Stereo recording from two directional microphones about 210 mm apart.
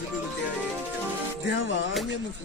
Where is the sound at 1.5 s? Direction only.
60° left (ahead or behind).